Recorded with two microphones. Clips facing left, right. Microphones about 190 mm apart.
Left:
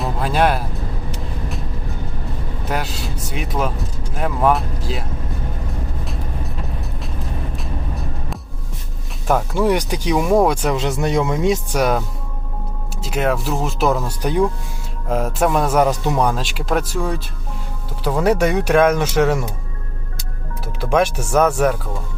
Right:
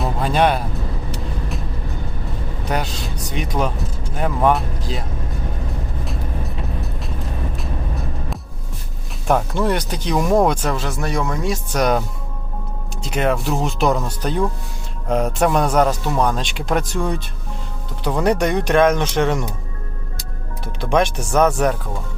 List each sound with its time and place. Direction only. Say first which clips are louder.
0.0 s music: right 1 dB; 5° left (ahead or behind)
2.6 s speech: right 1 dB; 5° left (ahead or behind)
7.5 s vehicle: even; centre (ahead or behind)
9.2 s speech: left 1 dB; centre (ahead or behind)
10.8 s speech: left 4 dB; 20° left (ahead or behind)
11.8 s speech: even; 5° left (ahead or behind)
20.9 s speech: left 1 dB; 5° left (ahead or behind)